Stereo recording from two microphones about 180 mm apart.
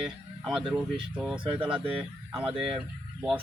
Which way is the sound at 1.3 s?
30° right (ahead or behind).